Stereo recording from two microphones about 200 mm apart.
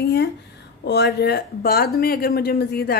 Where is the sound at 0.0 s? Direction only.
55° left (ahead or behind).